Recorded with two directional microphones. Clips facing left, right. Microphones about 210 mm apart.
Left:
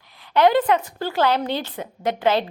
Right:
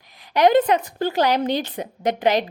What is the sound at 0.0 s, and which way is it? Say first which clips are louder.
A woman's voice: even; 15° right (ahead or behind).